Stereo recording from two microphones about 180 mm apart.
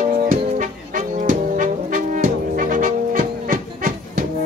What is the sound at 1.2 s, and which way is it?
Brass instrument, 45° right (ahead or behind).